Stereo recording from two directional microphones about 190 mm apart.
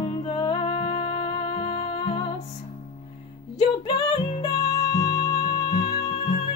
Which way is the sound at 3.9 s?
25° left (ahead or behind).